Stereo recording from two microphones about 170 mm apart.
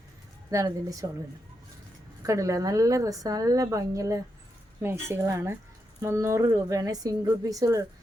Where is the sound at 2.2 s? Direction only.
20° right (ahead or behind).